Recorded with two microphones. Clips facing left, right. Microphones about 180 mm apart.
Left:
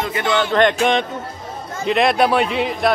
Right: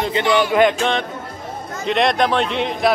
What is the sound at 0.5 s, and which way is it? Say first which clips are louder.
Speech: even; 10° right (ahead or behind).